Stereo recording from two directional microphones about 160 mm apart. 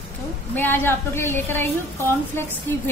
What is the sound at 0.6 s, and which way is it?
A woman's voice, 15° left (ahead or behind).